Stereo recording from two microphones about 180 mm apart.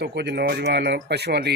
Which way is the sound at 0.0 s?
65° right (ahead or behind).